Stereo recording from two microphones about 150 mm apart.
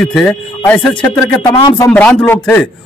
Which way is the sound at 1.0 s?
20° left (ahead or behind).